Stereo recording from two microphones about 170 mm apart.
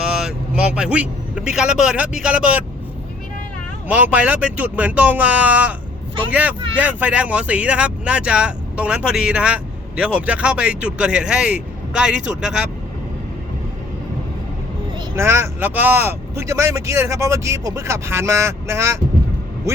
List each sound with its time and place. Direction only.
0.0 s a man's voice: 5° right (ahead or behind)
3.8 s speech: 10° right (ahead or behind)
6.7 s speech: 10° right (ahead or behind)
15.1 s speech: 15° right (ahead or behind)